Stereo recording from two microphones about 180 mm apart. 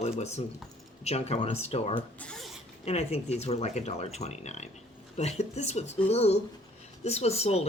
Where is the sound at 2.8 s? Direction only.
35° left (ahead or behind).